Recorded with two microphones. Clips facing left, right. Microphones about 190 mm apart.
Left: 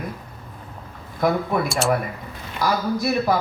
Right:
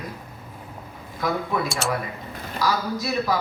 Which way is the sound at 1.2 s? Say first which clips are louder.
Left 5 dB; 55° left (ahead or behind).